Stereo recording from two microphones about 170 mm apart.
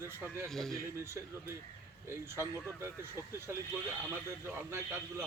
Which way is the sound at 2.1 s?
15° right (ahead or behind).